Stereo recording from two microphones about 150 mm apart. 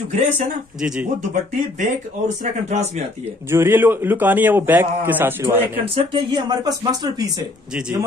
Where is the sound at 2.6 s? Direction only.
50° right (ahead or behind).